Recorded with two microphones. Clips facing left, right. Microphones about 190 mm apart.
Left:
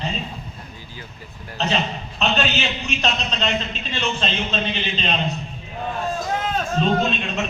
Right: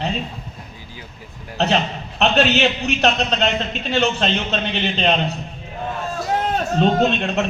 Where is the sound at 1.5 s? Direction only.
65° right (ahead or behind).